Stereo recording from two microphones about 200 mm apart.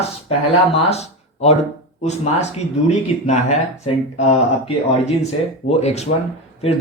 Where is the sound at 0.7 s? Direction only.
30° left (ahead or behind).